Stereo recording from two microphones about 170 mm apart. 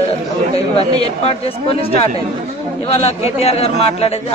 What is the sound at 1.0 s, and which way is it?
Speech, 35° left (ahead or behind).